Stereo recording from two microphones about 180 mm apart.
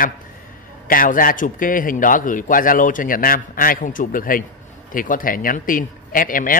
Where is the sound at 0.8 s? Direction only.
50° left (ahead or behind).